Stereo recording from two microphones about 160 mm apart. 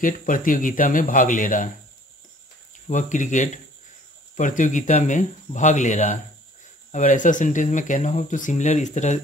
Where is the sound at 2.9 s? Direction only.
50° left (ahead or behind).